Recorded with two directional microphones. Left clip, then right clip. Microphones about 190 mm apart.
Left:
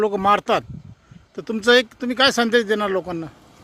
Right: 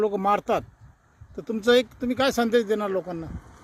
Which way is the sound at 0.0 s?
5° left (ahead or behind).